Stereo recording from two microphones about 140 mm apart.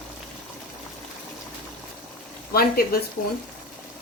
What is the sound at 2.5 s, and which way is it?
Speech, 90° left.